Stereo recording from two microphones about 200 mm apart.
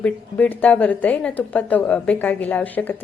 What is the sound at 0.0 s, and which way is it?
A woman's voice, 10° left (ahead or behind).